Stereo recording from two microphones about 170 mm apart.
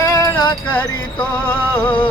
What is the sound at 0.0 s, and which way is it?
Music, 20° left (ahead or behind).